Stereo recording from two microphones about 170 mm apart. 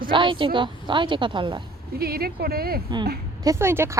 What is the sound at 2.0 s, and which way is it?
Speech, 65° right (ahead or behind).